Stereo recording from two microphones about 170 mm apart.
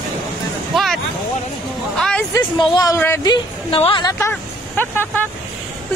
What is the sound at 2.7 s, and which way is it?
A woman's voice, 20° left (ahead or behind).